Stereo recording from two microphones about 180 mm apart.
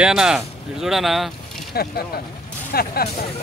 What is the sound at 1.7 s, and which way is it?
Speech, 60° left (ahead or behind).